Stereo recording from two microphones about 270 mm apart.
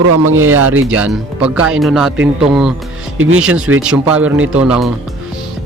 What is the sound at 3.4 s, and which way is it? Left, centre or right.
Speech, centre.